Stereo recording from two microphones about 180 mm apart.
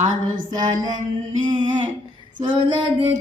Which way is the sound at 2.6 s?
25° right (ahead or behind).